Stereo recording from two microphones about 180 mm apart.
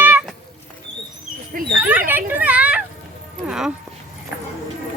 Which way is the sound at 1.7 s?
10° right (ahead or behind).